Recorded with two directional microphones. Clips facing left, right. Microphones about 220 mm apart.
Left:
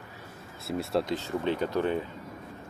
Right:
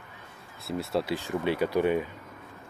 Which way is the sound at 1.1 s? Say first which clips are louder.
Right 1 dB; 10° right (ahead or behind).